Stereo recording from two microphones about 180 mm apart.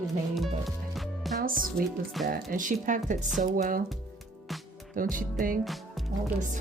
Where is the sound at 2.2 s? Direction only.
Centre (ahead or behind).